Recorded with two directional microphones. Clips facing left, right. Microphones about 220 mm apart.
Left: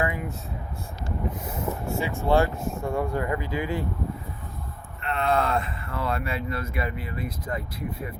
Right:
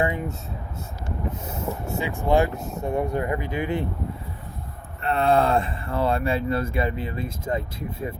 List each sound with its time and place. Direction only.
0.0 s speech: 25° right (ahead or behind)
2.0 s speech: 15° right (ahead or behind)
5.0 s speech: 35° right (ahead or behind)